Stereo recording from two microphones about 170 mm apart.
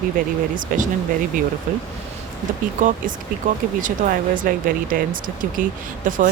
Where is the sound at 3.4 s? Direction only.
50° right (ahead or behind).